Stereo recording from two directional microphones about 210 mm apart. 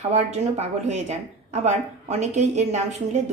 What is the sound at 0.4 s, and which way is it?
A woman's voice, 30° right (ahead or behind).